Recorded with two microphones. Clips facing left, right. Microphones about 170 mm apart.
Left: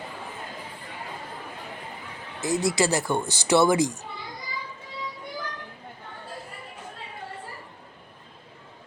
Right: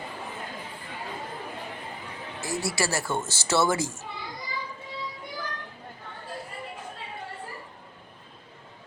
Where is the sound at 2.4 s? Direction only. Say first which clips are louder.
Left 6 dB; 20° left (ahead or behind).